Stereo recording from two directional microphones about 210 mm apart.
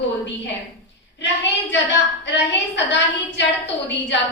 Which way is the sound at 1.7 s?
55° left (ahead or behind).